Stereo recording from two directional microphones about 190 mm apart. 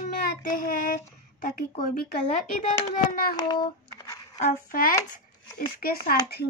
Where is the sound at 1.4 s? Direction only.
45° left (ahead or behind).